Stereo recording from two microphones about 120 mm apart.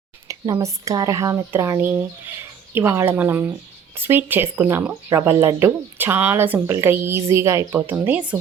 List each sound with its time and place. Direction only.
0.3 s speech: 30° right (ahead or behind); by 4.9 s 10° right (ahead or behind)
5.0 s speech: 25° right (ahead or behind)